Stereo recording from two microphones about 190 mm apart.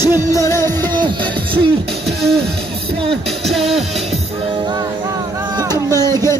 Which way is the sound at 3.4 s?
Centre (ahead or behind).